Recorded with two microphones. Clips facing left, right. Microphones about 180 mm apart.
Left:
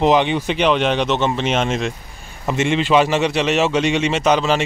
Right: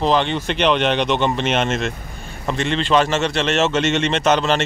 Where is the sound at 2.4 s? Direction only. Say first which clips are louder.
Left 3 dB; 15° left (ahead or behind).